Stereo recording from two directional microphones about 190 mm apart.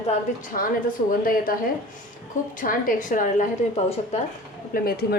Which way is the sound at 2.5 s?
45° left (ahead or behind).